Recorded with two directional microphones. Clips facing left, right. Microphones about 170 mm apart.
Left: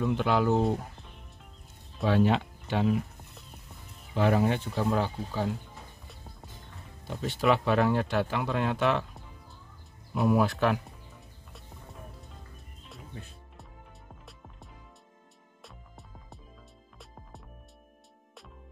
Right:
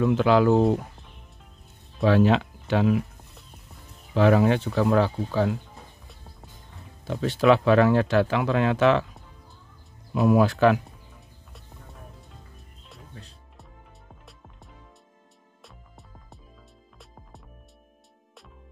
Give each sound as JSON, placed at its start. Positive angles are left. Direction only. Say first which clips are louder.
{"t": 0.0, "sound": "speech", "louder": "right 7 dB", "side_deg": -90}
{"t": 2.0, "sound": "speech", "louder": "right 5 dB", "side_deg": -90}
{"t": 4.1, "sound": "speech", "louder": "right 6 dB", "side_deg": -90}
{"t": 7.1, "sound": "speech", "louder": "right 6 dB", "side_deg": -90}
{"t": 10.1, "sound": "speech", "louder": "right 5 dB", "side_deg": -90}
{"t": 11.5, "sound": "music", "louder": "even", "side_deg": 0}
{"t": 15.6, "sound": "music", "louder": "even", "side_deg": 0}